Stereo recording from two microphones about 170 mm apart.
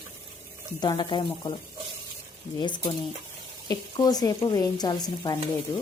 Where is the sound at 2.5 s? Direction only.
25° left (ahead or behind).